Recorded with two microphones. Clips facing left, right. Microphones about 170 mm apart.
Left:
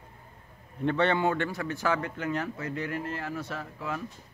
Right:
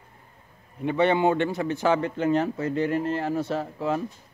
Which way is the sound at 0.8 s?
15° right (ahead or behind).